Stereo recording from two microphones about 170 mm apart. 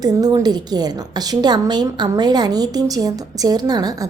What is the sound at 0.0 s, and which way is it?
A woman's voice, 20° right (ahead or behind).